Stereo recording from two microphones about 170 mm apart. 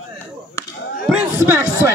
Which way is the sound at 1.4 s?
15° right (ahead or behind).